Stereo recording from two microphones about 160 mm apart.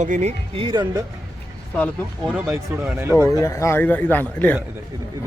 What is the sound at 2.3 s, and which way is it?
Speech, 5° right (ahead or behind).